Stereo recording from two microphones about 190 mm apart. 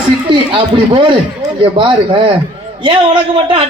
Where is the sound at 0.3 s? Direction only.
25° right (ahead or behind).